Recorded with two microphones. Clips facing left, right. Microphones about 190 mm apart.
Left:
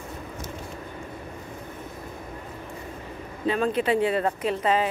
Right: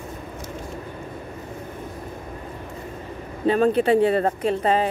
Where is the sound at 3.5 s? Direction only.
40° right (ahead or behind).